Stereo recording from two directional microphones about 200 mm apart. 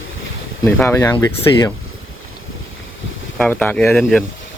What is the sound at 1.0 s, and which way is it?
Speech, 15° left (ahead or behind).